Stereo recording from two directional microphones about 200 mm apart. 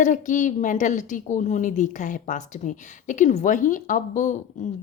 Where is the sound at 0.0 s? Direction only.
40° left (ahead or behind).